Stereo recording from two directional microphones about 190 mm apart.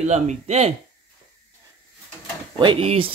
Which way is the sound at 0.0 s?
35° right (ahead or behind).